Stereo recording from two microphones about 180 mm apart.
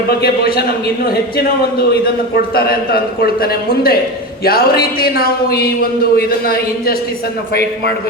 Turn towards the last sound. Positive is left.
turn(degrees=55)  # may be behind; listen again after turning